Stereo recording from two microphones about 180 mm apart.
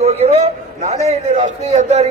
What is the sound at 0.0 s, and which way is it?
A man's voice, 35° right (ahead or behind).